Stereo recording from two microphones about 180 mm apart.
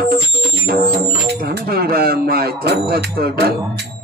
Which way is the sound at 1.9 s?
60° right (ahead or behind).